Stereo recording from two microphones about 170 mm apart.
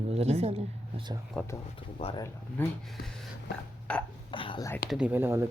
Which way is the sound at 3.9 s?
5° left (ahead or behind).